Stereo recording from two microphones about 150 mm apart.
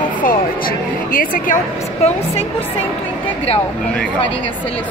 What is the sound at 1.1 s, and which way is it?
Speech, 65° left (ahead or behind).